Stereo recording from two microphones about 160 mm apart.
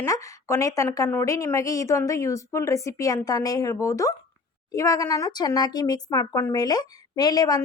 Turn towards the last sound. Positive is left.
turn(degrees=25)  # may be behind; listen again after turning